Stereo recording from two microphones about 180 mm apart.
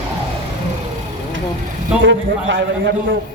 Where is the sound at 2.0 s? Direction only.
80° right.